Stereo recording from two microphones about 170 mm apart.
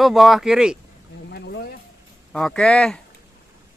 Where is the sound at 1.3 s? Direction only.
80° left.